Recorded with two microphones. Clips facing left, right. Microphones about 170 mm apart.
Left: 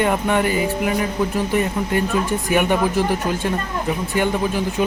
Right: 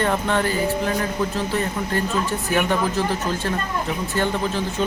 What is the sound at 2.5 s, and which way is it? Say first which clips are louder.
Speech: left 3 dB; 15° left (ahead or behind).